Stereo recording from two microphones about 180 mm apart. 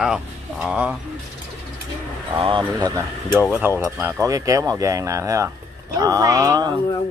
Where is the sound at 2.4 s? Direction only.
30° right (ahead or behind).